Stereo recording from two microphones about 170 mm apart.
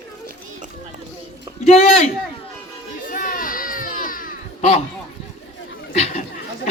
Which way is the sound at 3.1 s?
55° left (ahead or behind).